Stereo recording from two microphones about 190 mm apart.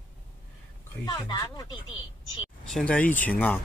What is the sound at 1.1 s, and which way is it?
Speech, 20° left (ahead or behind).